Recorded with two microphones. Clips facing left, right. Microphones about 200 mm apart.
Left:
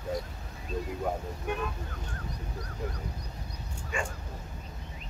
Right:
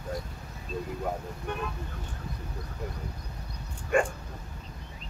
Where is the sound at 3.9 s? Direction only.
55° right (ahead or behind).